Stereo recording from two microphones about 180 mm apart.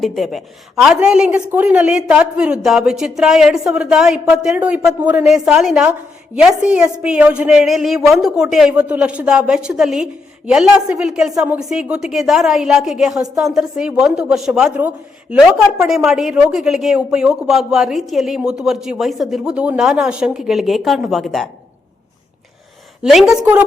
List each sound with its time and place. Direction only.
0.0 s a woman's voice: centre (ahead or behind)
23.0 s a woman's voice: centre (ahead or behind)